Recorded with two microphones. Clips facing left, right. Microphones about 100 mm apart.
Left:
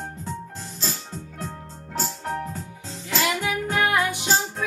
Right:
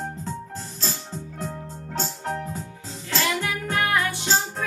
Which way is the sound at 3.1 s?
20° left (ahead or behind).